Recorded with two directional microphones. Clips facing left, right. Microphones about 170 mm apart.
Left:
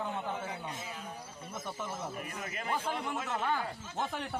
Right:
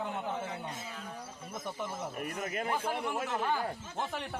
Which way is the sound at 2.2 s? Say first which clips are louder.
Right 5 dB; 50° right (ahead or behind).